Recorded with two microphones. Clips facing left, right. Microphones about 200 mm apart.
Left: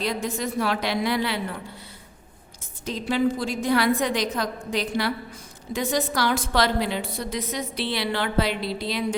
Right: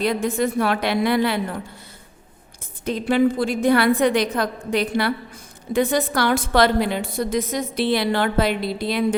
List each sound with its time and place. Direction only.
0.0 s a woman's voice: 55° right (ahead or behind)
2.8 s a woman's voice: 55° right (ahead or behind)